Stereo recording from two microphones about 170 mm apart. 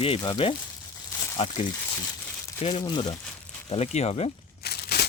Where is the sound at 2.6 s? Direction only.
30° left (ahead or behind).